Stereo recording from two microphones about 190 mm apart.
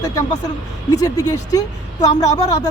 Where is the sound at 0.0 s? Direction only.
20° left (ahead or behind).